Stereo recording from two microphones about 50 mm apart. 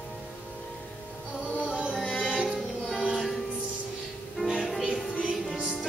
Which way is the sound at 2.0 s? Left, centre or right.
Centre.